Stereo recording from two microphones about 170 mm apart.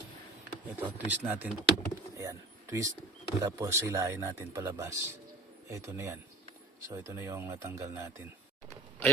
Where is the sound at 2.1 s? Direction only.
20° right (ahead or behind).